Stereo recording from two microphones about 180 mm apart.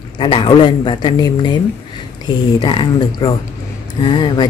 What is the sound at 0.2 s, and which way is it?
Speech, 25° left (ahead or behind).